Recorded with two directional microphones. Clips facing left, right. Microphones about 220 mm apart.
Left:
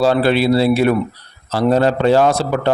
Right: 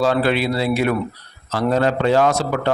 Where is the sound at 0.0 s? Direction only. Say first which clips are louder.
Left 4 dB; 30° left (ahead or behind).